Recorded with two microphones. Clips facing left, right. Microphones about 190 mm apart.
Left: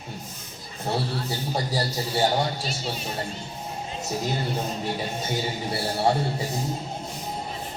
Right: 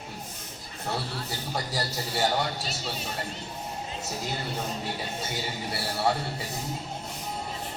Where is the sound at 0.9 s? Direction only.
25° left (ahead or behind).